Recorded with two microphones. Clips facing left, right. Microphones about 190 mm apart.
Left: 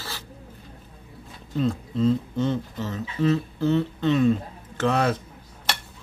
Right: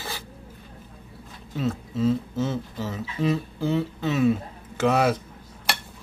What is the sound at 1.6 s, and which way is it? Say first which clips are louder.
Speech: left 2 dB; 5° right (ahead or behind).